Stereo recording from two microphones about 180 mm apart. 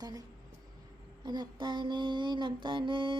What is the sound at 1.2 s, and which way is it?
Mantra, 25° right (ahead or behind).